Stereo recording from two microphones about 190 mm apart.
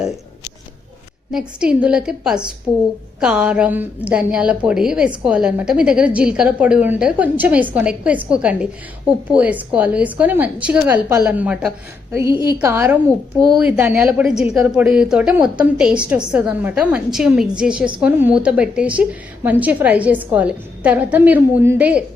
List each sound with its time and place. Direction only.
1.3 s a woman's voice: 5° right (ahead or behind)
2.7 s a woman's voice: 20° right (ahead or behind)
3.2 s a woman's voice: 5° right (ahead or behind)